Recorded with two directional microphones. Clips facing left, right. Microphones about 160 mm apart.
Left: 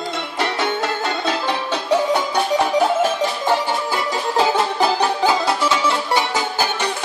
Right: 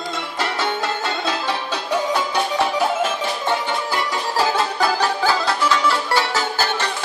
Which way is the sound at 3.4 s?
20° left (ahead or behind).